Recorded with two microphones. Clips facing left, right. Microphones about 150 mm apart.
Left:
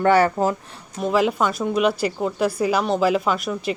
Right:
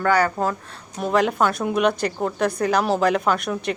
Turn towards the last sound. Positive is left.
turn(degrees=0)  # may be behind; listen again after turning